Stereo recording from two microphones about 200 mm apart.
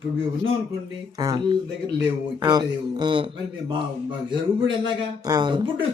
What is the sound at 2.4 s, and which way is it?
Speech, 20° right (ahead or behind).